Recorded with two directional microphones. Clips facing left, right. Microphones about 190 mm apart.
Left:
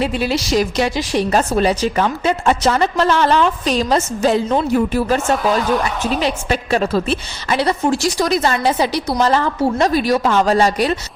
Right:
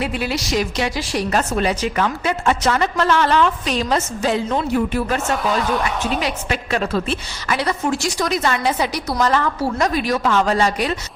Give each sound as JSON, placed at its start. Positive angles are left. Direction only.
{"t": 0.0, "sound": "a woman's voice", "side_deg": 30}
{"t": 6.2, "sound": "a woman's voice", "side_deg": 35}